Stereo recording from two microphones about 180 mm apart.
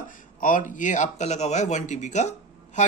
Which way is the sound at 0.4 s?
50° left (ahead or behind).